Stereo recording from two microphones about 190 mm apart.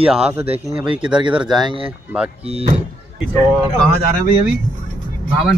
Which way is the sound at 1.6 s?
25° right (ahead or behind).